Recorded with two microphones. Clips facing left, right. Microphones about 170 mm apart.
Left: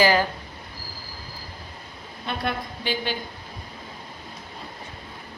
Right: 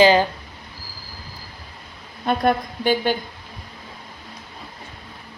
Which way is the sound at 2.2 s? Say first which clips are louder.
Right 9 dB; 45° right (ahead or behind).